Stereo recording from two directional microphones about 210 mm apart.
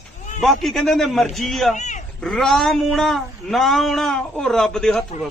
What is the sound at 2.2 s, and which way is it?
Speech, centre (ahead or behind).